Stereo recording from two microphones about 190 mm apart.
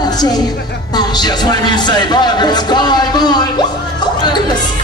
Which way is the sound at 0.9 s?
20° left (ahead or behind).